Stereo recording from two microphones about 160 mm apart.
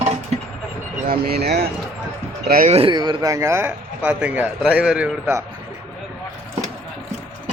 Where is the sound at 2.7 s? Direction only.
35° right (ahead or behind); by 5.4 s 10° right (ahead or behind).